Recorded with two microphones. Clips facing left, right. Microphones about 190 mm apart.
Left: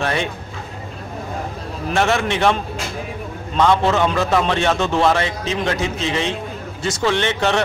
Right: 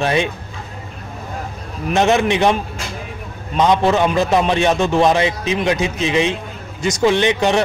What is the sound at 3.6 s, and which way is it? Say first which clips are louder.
A man's voice: right 2 dB; 15° right (ahead or behind).